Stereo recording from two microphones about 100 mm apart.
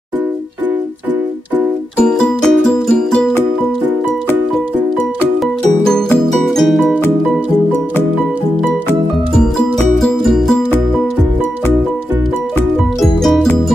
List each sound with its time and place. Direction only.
2.0 s music: 5° left (ahead or behind)
5.9 s music: 5° left (ahead or behind)
9.9 s music: centre (ahead or behind)
13.0 s music: 5° left (ahead or behind)